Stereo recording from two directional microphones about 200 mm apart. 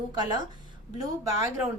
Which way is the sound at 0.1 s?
20° right (ahead or behind).